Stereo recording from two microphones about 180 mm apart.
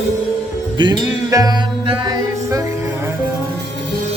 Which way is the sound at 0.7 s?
20° right (ahead or behind).